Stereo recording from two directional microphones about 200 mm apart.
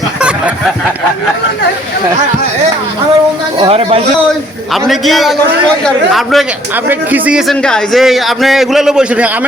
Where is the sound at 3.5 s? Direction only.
25° right (ahead or behind).